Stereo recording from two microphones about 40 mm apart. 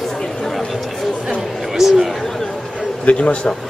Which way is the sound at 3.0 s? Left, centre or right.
Left.